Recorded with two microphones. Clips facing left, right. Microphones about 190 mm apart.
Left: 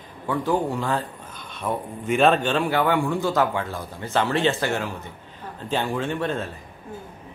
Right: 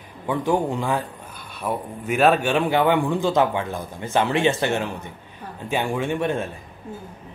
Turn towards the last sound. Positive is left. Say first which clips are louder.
# right 2 dB
turn(degrees=-15)  # may be behind; listen again after turning